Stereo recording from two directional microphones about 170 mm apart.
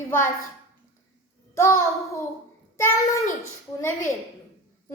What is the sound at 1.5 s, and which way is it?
Speech, 15° left (ahead or behind).